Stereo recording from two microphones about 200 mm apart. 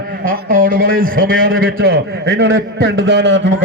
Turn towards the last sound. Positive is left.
turn(degrees=-65)  # may be behind; listen again after turning